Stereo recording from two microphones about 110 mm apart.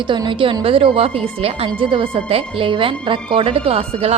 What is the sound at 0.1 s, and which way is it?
Speech, 45° right (ahead or behind).